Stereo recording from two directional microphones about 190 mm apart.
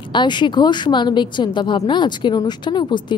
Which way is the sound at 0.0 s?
25° left (ahead or behind).